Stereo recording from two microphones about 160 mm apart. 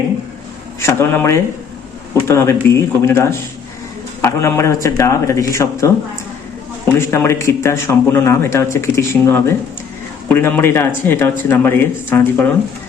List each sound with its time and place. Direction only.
0.8 s speech: 15° left (ahead or behind)
6.9 s speech: 15° left (ahead or behind)